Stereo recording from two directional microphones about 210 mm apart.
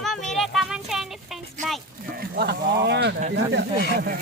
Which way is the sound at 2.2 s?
50° right (ahead or behind).